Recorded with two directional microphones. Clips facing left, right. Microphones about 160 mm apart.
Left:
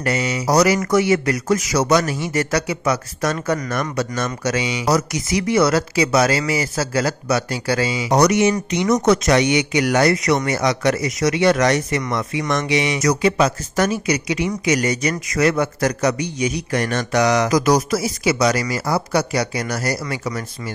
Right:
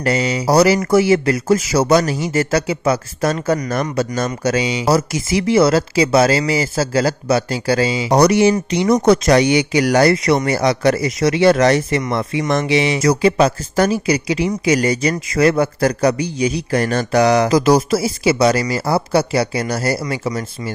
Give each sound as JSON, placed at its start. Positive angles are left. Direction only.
{"t": 0.0, "sound": "a man's voice", "side_deg": -30}